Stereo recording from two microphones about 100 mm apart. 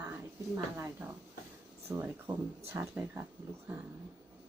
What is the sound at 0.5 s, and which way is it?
Speech, 25° right (ahead or behind).